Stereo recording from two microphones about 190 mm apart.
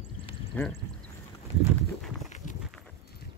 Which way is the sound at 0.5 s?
10° left (ahead or behind).